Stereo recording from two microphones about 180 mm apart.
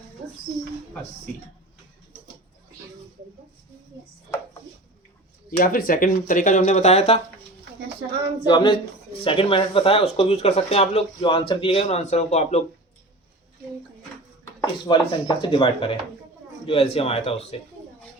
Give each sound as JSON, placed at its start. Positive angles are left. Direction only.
{"t": 5.5, "sound": "speech", "side_deg": 55}
{"t": 8.4, "sound": "speech", "side_deg": 25}
{"t": 14.4, "sound": "speech", "side_deg": 20}